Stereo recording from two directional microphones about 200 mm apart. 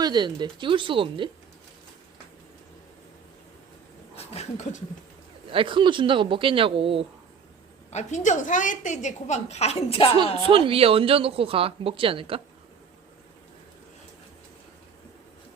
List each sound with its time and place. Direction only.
0.0 s a woman's voice: 20° right (ahead or behind)
4.1 s speech: 30° left (ahead or behind)
5.5 s a woman's voice: 25° right (ahead or behind)
7.9 s a woman's voice: 35° left (ahead or behind)
10.4 s a woman's voice: 25° right (ahead or behind)